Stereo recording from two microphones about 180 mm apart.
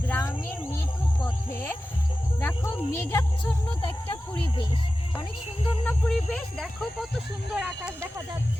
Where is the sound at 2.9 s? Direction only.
15° left (ahead or behind).